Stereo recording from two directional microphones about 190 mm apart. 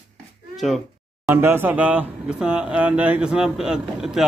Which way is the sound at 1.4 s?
10° right (ahead or behind).